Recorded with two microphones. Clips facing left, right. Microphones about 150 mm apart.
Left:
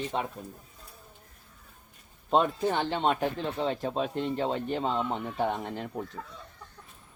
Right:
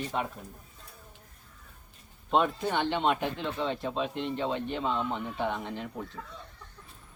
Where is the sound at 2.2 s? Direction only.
35° left (ahead or behind).